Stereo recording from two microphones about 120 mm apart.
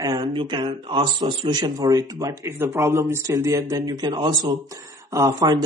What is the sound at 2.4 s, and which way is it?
A man's voice, 20° right (ahead or behind).